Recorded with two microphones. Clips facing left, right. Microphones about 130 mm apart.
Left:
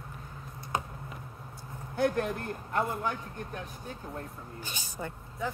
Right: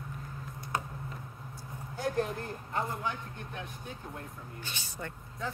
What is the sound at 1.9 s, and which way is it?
A man's voice, 60° left (ahead or behind).